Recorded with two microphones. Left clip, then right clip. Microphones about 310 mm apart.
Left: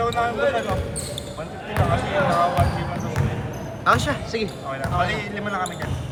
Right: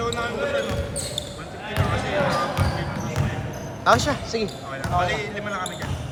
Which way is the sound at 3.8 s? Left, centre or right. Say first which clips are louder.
Right 1 dB; centre.